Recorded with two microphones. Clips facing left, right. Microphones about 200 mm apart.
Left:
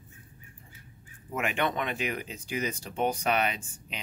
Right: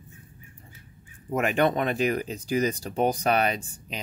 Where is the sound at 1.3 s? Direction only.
40° right (ahead or behind).